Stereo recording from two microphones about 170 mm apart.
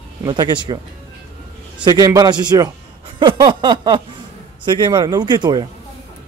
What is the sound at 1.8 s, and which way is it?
Speech, 20° right (ahead or behind).